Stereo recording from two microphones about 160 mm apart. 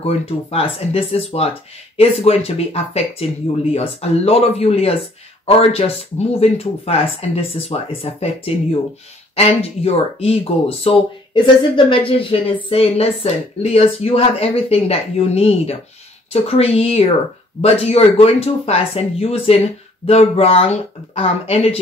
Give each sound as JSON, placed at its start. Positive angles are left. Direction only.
{"t": 0.0, "sound": "speech", "side_deg": 40}